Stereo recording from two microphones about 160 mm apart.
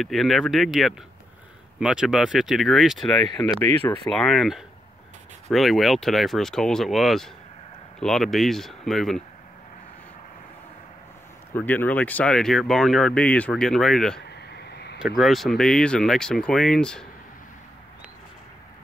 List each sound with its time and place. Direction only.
0.0 s speech: centre (ahead or behind)
3.4 s speech: 15° left (ahead or behind)
11.5 s speech: 10° left (ahead or behind)
14.4 s a sound: 90° left
15.0 s speech: 5° right (ahead or behind)